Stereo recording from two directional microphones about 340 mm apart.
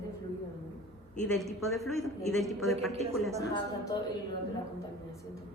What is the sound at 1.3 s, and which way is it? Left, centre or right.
A woman's voice, centre.